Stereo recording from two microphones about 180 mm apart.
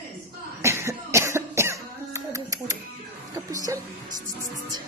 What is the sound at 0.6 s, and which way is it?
Cough, 15° right (ahead or behind).